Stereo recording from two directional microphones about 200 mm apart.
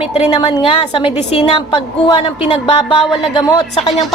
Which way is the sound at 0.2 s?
25° left (ahead or behind).